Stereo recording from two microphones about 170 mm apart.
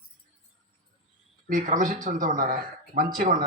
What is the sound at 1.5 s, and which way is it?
A man's voice, 50° right (ahead or behind).